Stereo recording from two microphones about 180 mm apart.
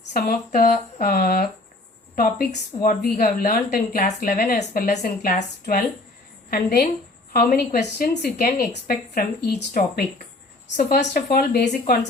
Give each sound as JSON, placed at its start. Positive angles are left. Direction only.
{"t": 0.1, "sound": "a woman's voice", "side_deg": 50}
{"t": 7.9, "sound": "speech", "side_deg": 60}